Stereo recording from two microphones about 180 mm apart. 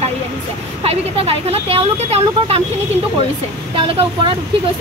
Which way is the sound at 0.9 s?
35° right (ahead or behind).